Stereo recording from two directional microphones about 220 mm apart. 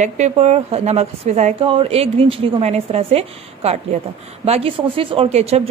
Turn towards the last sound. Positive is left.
turn(degrees=-30)  # may be behind; listen again after turning